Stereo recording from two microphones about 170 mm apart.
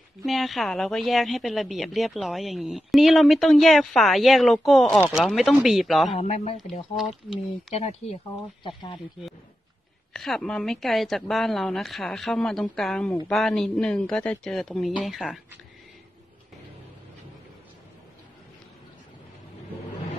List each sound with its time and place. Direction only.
0.2 s a woman's voice: centre (ahead or behind)
6.1 s speech: 35° left (ahead or behind)
10.1 s a woman's voice: centre (ahead or behind)